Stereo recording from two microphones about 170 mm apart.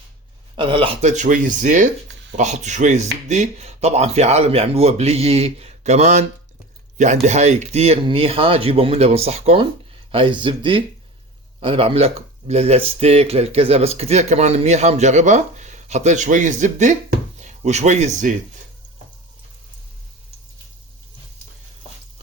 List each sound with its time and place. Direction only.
0.5 s speech: 30° right (ahead or behind)
1.1 s speech: 50° right (ahead or behind)